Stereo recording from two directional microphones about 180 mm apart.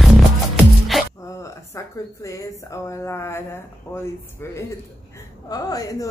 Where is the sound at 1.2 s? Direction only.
15° left (ahead or behind).